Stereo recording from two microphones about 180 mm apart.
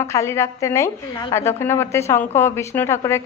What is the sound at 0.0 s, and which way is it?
Speech, 15° left (ahead or behind).